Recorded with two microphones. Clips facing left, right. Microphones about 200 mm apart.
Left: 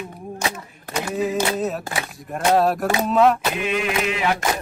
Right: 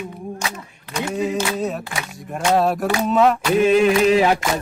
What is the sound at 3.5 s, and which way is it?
Mantra, 40° right (ahead or behind).